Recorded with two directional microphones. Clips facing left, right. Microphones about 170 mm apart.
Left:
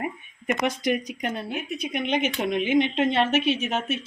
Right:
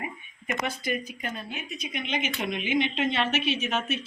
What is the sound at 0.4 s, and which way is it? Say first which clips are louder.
Speech: left 6 dB; 75° left (ahead or behind).